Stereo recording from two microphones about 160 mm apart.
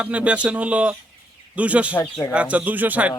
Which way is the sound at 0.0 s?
10° right (ahead or behind).